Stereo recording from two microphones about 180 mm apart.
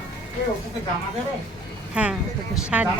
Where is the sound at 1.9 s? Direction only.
5° right (ahead or behind).